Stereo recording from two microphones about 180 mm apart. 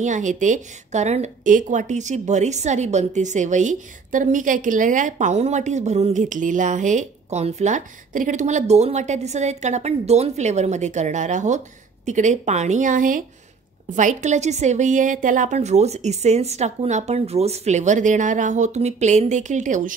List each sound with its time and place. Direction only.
0.0 s a woman's voice: 45° right (ahead or behind)